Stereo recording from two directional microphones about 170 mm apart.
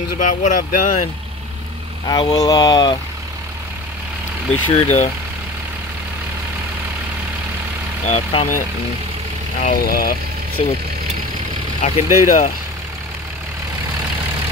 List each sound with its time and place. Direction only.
0.2 s speech: 45° left (ahead or behind)
2.0 s speech: 25° left (ahead or behind)
4.6 s speech: 40° left (ahead or behind)
8.1 s speech: 35° left (ahead or behind)
9.7 s speech: 60° left (ahead or behind)
10.6 s speech: 40° left (ahead or behind)
11.8 s speech: 45° left (ahead or behind)